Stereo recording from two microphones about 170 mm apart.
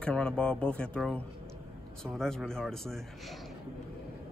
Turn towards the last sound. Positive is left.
turn(degrees=0)  # may be behind; listen again after turning